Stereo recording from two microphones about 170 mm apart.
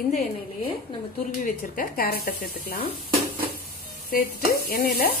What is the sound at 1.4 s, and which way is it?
Stir, 60° left (ahead or behind).